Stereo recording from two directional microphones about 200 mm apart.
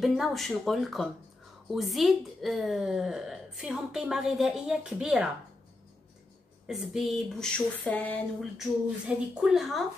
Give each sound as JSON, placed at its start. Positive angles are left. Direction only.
{"t": 0.0, "sound": "speech", "side_deg": 0}
{"t": 6.7, "sound": "speech", "side_deg": 0}